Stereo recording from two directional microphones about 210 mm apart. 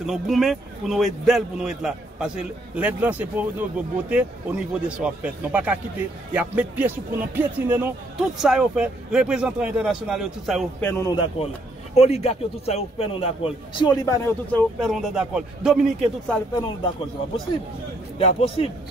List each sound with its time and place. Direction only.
0.0 s a man's voice: centre (ahead or behind)
10.8 s a man's voice: 10° left (ahead or behind)
11.9 s a man's voice: 30° left (ahead or behind); by 16.3 s centre (ahead or behind)
18.1 s a man's voice: 25° left (ahead or behind)